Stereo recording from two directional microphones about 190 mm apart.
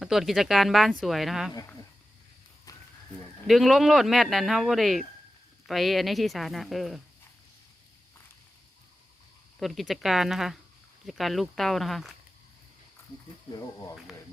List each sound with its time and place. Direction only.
0.0 s speech: centre (ahead or behind)
2.7 s horse: 20° left (ahead or behind)
3.4 s speech: centre (ahead or behind)
9.6 s speech: centre (ahead or behind)